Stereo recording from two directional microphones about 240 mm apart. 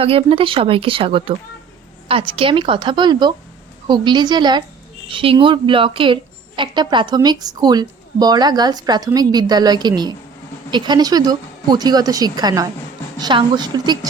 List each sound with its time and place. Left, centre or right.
0.0 s a woman's voice: right